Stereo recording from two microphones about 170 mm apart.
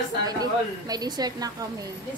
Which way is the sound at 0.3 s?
20° right (ahead or behind).